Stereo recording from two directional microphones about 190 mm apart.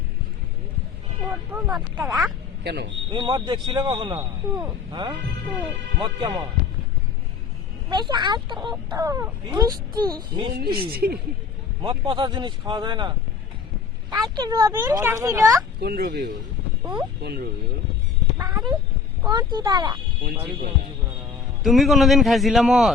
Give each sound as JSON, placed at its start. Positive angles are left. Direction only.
{"t": 1.5, "sound": "a man's voice", "side_deg": -5}
{"t": 2.6, "sound": "speech", "side_deg": -60}
{"t": 3.1, "sound": "a man's voice", "side_deg": -25}
{"t": 7.9, "sound": "a man's voice", "side_deg": -25}
{"t": 10.5, "sound": "speech", "side_deg": -55}
{"t": 11.8, "sound": "a man's voice", "side_deg": -25}
{"t": 15.8, "sound": "speech", "side_deg": -55}
{"t": 16.8, "sound": "speech", "side_deg": -20}
{"t": 17.2, "sound": "speech", "side_deg": -55}
{"t": 18.3, "sound": "cat", "side_deg": -15}
{"t": 19.3, "sound": "a man's voice", "side_deg": -25}
{"t": 21.6, "sound": "a man's voice", "side_deg": 0}